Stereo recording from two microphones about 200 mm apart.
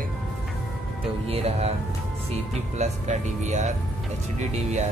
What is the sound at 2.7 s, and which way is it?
Speech, 35° right (ahead or behind).